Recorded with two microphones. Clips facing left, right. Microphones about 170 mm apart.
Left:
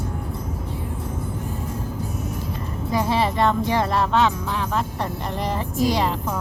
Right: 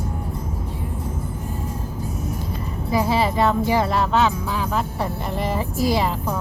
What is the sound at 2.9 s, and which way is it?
Speech, 5° right (ahead or behind).